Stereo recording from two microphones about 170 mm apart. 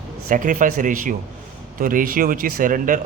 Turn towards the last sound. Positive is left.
turn(degrees=-50)  # may be behind; listen again after turning